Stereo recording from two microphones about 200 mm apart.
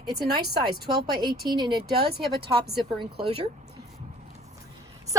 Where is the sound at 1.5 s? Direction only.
20° right (ahead or behind).